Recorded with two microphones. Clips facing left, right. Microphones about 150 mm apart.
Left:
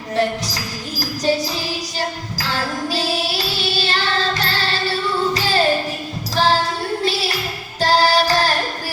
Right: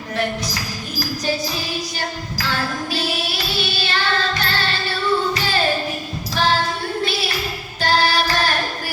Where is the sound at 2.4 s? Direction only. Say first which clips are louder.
Left 1 dB; 35° left (ahead or behind).